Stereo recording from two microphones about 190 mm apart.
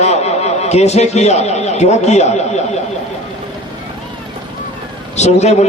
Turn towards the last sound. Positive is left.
turn(degrees=35)  # may be behind; listen again after turning